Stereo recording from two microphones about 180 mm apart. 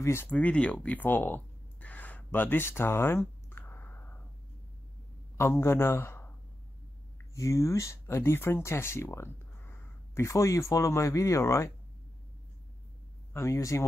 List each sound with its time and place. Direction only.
0.0 s a sound: 15° left (ahead or behind)
5.4 s a man's voice: 15° left (ahead or behind)
7.3 s speech: 15° left (ahead or behind)
13.3 s speech: 15° left (ahead or behind)